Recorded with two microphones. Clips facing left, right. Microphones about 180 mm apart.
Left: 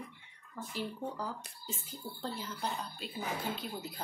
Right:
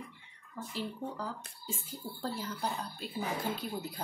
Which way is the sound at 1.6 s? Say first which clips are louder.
Right 2 dB; 10° right (ahead or behind).